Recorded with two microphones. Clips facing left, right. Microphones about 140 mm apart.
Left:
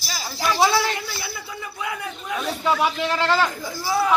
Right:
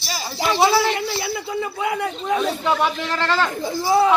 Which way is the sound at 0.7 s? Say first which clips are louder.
Right 4 dB; 30° right (ahead or behind).